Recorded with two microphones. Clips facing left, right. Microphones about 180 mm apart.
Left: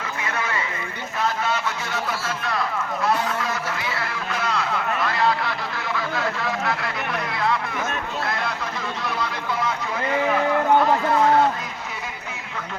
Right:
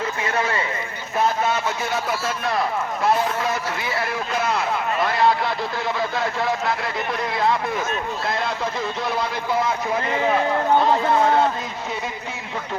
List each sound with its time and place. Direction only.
0.3 s a sound: 30° right (ahead or behind)
3.1 s a man's voice: 25° right (ahead or behind)
9.6 s speech: 25° right (ahead or behind)